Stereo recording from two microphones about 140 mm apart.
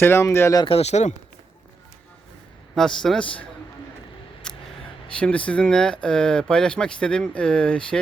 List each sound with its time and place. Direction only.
0.0 s speech: 20° left (ahead or behind)
0.6 s speech: 45° left (ahead or behind)
2.7 s speech: 5° left (ahead or behind)
4.4 s a sound: 5° left (ahead or behind)
5.1 s speech: 10° left (ahead or behind)